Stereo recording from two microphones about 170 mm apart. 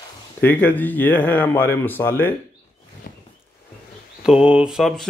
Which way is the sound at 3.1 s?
55° left (ahead or behind).